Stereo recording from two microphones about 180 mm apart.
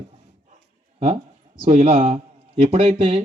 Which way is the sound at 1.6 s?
35° right (ahead or behind).